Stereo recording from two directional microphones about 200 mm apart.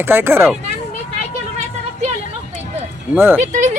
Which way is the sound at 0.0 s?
10° right (ahead or behind).